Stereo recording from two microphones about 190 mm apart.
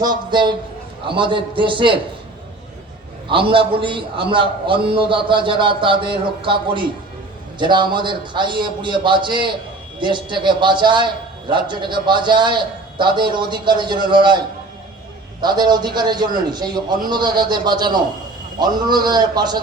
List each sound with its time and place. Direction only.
0.0 s a man's voice: 25° right (ahead or behind)
3.2 s a man's voice: 25° right (ahead or behind)